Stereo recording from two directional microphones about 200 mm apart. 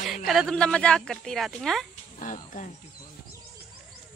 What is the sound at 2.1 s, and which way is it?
Speech, 40° left (ahead or behind).